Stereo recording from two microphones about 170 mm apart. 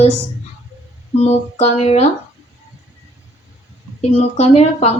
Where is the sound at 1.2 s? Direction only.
40° left (ahead or behind).